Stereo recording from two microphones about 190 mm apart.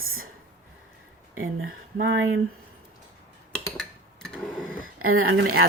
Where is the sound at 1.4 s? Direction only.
90° right.